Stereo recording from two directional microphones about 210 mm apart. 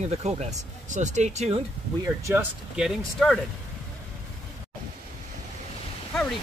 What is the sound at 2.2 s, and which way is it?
Speech, 10° right (ahead or behind).